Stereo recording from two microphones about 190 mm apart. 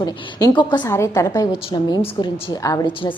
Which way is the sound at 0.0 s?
20° left (ahead or behind).